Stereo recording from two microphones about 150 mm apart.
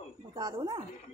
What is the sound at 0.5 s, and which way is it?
Speech, 40° right (ahead or behind).